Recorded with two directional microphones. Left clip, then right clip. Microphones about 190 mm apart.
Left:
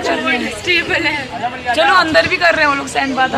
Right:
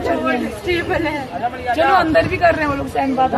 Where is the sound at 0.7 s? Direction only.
30° right (ahead or behind).